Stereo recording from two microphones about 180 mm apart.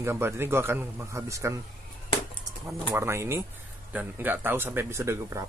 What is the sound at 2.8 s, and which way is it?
Speech, 15° right (ahead or behind).